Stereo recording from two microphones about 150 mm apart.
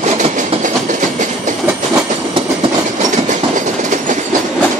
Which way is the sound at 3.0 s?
55° right (ahead or behind).